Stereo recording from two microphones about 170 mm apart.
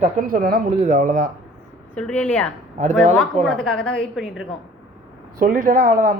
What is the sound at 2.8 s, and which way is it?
Speech, 45° right (ahead or behind).